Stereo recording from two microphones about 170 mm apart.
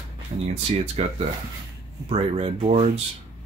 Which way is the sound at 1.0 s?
40° right (ahead or behind).